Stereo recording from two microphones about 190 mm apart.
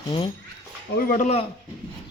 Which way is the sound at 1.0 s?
45° left (ahead or behind).